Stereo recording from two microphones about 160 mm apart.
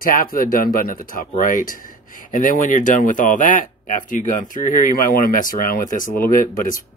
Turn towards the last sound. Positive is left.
turn(degrees=60)  # may be behind; listen again after turning